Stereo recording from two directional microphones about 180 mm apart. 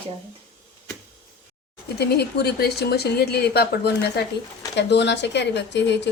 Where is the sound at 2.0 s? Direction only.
65° left (ahead or behind).